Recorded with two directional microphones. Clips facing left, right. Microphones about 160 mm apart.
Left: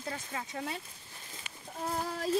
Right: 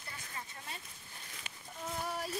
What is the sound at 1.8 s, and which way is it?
Speech, 90° left.